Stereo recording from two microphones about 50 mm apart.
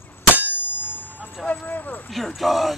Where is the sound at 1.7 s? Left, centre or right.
Left.